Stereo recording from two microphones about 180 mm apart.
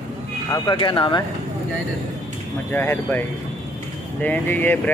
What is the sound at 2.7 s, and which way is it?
Speech, 10° left (ahead or behind).